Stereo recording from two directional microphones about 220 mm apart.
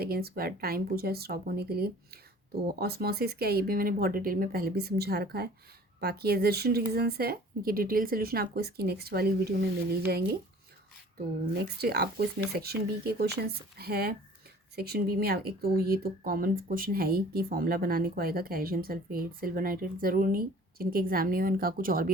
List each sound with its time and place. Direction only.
0.0 s speech: 45° right (ahead or behind)
11.5 s speech: 45° right (ahead or behind)